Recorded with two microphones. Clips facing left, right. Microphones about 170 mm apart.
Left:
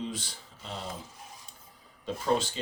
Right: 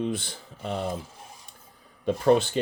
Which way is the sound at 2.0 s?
60° right (ahead or behind).